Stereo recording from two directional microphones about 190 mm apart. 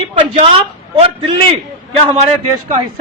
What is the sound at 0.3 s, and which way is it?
A man's voice, 30° right (ahead or behind).